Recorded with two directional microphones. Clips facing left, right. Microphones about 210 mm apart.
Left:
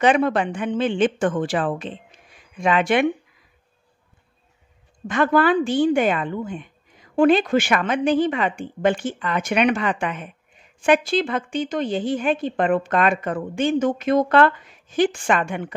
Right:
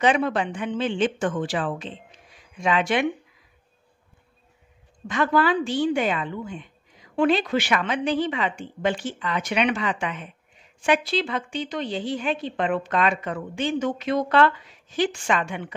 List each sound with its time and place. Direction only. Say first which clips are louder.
0.0 s a woman's voice: left 3 dB; 55° left (ahead or behind)
5.0 s a woman's voice: left 4 dB; 55° left (ahead or behind)